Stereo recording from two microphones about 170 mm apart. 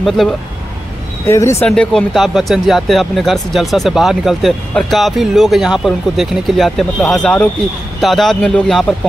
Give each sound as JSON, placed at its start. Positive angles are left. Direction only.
{"t": 0.2, "sound": "speech", "side_deg": 0}
{"t": 1.2, "sound": "speech", "side_deg": 15}
{"t": 1.7, "sound": "speech", "side_deg": 5}